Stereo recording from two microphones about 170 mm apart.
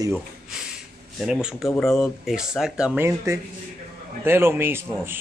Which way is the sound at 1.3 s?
5° right (ahead or behind).